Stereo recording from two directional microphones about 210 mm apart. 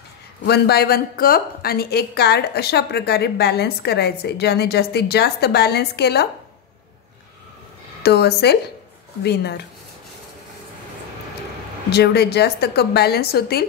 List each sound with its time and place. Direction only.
0.5 s a woman's voice: 50° left (ahead or behind)
8.0 s a woman's voice: 50° left (ahead or behind)
11.9 s a woman's voice: 50° left (ahead or behind)